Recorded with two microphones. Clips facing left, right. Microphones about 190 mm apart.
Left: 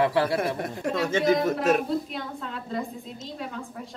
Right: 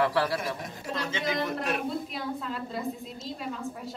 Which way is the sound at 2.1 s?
Centre (ahead or behind).